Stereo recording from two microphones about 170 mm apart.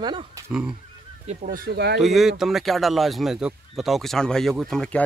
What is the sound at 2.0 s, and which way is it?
Speech, centre (ahead or behind).